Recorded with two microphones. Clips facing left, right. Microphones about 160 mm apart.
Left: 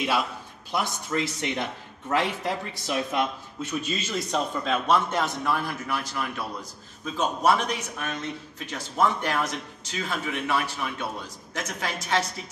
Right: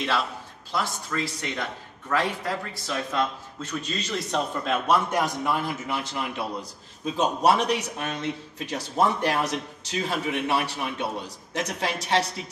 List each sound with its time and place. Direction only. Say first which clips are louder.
0.7 s a man's voice: left 1 dB; 20° left (ahead or behind); by 6.4 s 20° right (ahead or behind)
7.2 s a man's voice: right 2 dB; 35° right (ahead or behind)